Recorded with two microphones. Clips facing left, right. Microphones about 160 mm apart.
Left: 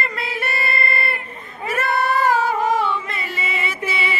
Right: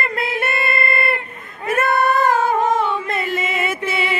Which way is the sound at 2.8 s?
50° right (ahead or behind).